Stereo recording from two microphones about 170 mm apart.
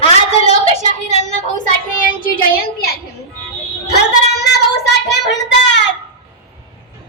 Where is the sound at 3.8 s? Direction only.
75° left (ahead or behind); by 5.8 s 90° left.